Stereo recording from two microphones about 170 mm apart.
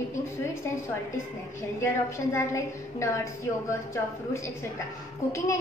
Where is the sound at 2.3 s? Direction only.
15° left (ahead or behind).